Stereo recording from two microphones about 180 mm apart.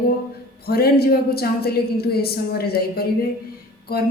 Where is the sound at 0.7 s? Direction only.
60° left (ahead or behind).